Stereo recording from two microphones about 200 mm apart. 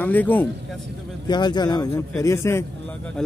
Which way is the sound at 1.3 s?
20° left (ahead or behind).